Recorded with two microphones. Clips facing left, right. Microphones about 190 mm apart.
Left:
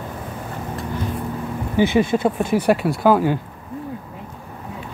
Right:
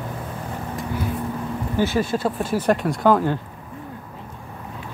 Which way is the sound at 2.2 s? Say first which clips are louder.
Left 4 dB; 20° left (ahead or behind).